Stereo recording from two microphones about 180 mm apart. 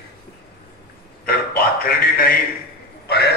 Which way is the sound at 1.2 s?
55° left (ahead or behind).